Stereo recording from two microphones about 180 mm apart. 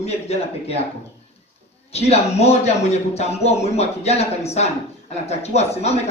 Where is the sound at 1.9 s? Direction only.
35° left (ahead or behind).